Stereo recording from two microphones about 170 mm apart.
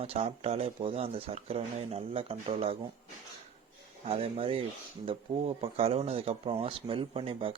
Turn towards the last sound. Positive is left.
turn(degrees=-35)  # may be behind; listen again after turning